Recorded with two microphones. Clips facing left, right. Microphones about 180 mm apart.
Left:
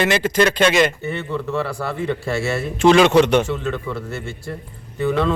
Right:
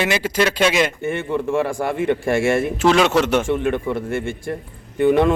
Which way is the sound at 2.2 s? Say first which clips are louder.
Right 5 dB; 50° right (ahead or behind).